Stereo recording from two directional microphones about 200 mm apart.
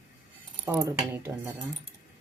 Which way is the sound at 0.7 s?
15° right (ahead or behind).